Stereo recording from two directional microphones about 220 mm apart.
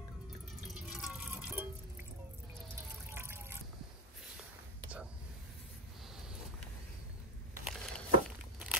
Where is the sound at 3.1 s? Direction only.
10° right (ahead or behind).